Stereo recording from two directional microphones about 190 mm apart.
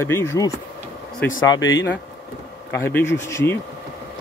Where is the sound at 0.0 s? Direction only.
15° left (ahead or behind).